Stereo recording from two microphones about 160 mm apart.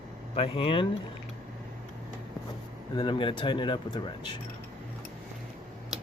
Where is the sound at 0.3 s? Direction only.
35° left (ahead or behind).